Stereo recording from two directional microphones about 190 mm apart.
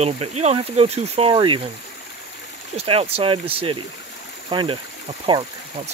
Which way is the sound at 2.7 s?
30° right (ahead or behind).